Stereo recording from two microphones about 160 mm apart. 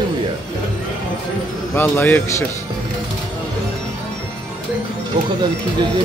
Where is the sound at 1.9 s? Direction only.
10° left (ahead or behind).